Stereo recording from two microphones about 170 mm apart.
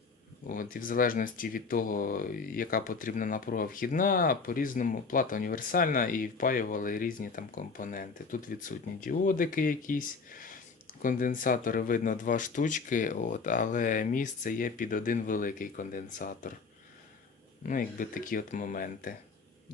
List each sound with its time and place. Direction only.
0.4 s speech: 50° left (ahead or behind)
17.7 s speech: 55° left (ahead or behind)